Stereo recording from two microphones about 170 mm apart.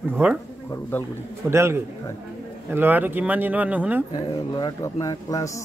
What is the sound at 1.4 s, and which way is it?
Speech, 15° right (ahead or behind).